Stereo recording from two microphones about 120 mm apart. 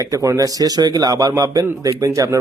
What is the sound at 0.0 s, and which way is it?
Speech, 25° right (ahead or behind).